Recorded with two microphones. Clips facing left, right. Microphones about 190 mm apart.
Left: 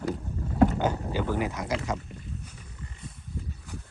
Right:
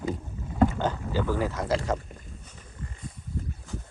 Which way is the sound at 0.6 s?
15° left (ahead or behind).